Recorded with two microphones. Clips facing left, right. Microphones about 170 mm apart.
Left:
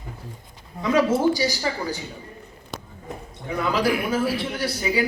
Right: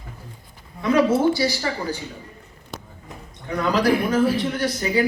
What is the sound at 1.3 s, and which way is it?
Speech, 15° left (ahead or behind).